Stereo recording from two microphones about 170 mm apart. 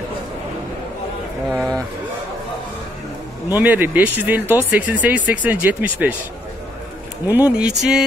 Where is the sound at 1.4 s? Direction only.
5° left (ahead or behind).